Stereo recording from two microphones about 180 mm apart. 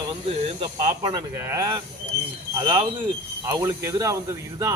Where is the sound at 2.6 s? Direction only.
25° right (ahead or behind).